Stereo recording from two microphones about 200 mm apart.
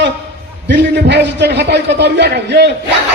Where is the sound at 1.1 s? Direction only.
60° right (ahead or behind).